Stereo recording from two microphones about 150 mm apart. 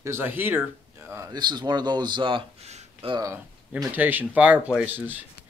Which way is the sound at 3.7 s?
10° right (ahead or behind).